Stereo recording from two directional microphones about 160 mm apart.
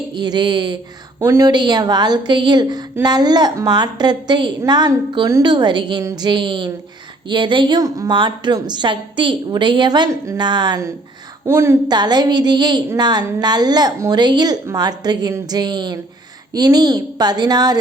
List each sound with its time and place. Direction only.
0.1 s a woman's voice: 25° right (ahead or behind)